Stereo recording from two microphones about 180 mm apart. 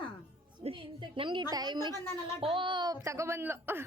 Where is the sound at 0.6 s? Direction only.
30° right (ahead or behind).